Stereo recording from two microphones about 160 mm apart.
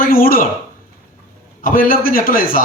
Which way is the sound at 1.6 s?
60° left (ahead or behind).